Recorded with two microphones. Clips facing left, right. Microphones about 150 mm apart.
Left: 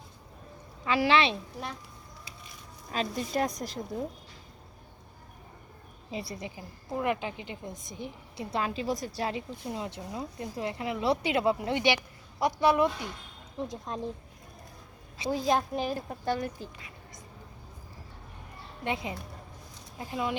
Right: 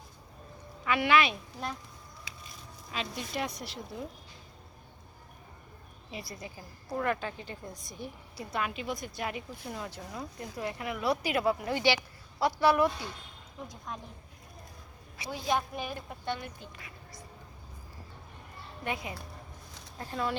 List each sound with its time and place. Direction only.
0.9 s a woman's voice: 30° left (ahead or behind)
2.9 s a woman's voice: 40° left (ahead or behind)
6.1 s a woman's voice: 25° left (ahead or behind)
8.4 s a woman's voice: 30° left (ahead or behind)
15.3 s a woman's voice: 35° left (ahead or behind)
18.9 s a woman's voice: 20° left (ahead or behind)